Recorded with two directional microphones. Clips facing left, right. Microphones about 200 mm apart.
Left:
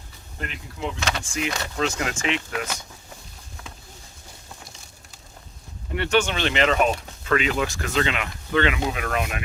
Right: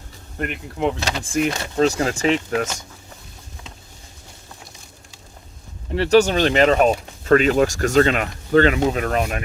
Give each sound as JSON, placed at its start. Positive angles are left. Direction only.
{"t": 0.3, "sound": "speech", "side_deg": -60}
{"t": 1.5, "sound": "speech", "side_deg": -30}
{"t": 5.9, "sound": "speech", "side_deg": -35}